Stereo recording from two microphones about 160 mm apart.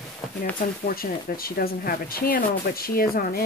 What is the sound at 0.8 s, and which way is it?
Speech, 65° left (ahead or behind).